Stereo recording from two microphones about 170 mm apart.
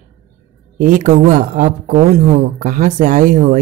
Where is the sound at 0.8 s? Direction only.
50° right (ahead or behind).